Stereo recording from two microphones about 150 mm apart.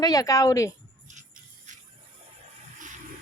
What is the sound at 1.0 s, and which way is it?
Music, 55° right (ahead or behind).